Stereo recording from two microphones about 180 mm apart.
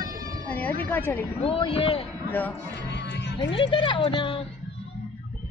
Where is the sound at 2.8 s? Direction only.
80° left.